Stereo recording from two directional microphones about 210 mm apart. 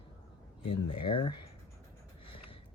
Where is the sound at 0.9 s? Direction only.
25° left (ahead or behind).